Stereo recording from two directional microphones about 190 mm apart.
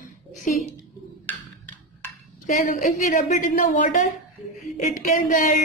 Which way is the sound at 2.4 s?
45° left (ahead or behind).